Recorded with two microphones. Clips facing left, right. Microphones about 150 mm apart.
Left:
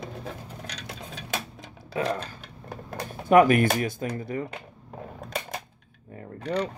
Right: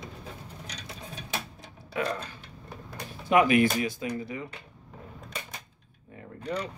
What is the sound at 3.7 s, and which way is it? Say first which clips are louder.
Speech: left 1 dB; 50° left (ahead or behind).